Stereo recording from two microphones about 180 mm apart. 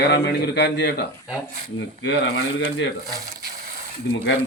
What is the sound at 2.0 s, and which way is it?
Speech, 90° left.